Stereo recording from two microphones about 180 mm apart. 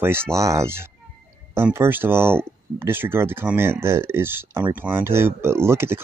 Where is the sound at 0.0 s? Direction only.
15° right (ahead or behind).